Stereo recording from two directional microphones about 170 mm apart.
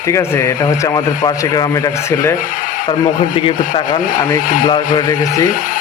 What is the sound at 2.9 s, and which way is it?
Speech, 50° left (ahead or behind).